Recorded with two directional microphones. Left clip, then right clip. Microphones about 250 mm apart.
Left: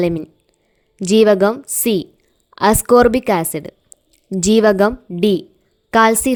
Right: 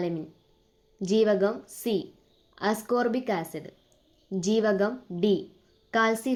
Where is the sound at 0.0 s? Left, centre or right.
Left.